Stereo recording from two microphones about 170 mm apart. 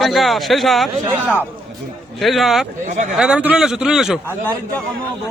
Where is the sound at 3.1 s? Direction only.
5° right (ahead or behind).